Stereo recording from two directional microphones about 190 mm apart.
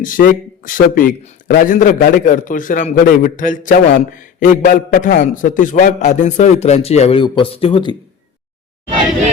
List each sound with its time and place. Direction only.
0.0 s a man's voice: 45° left (ahead or behind); by 7.9 s 25° left (ahead or behind)